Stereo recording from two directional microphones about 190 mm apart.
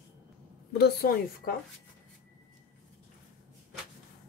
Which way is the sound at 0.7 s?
55° left (ahead or behind).